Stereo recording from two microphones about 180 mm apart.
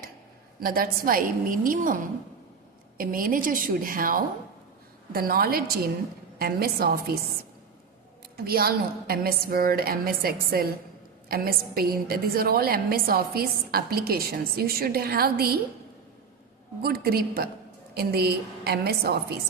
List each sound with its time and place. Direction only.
0.6 s a woman's voice: 50° right (ahead or behind)
8.4 s a woman's voice: 60° right (ahead or behind)
16.8 s a woman's voice: 60° right (ahead or behind)